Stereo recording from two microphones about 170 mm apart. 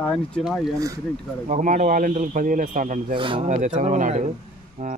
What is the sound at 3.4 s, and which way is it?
Speech, 45° right (ahead or behind).